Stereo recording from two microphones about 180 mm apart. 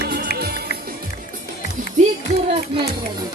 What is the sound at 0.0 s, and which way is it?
Music, 60° right (ahead or behind).